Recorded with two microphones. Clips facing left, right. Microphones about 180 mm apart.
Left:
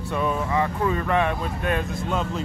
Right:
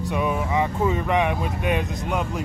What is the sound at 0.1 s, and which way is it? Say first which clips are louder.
Speech: even; 15° right (ahead or behind).